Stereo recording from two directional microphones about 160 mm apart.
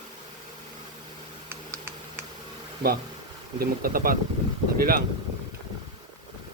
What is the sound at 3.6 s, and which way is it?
Speech, 65° right (ahead or behind).